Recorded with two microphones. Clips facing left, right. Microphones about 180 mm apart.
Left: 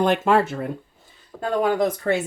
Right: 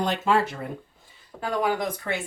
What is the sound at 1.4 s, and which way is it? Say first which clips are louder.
Speech: left 5 dB; 40° left (ahead or behind).